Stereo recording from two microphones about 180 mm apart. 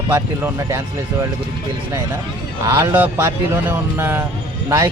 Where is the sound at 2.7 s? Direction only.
10° right (ahead or behind).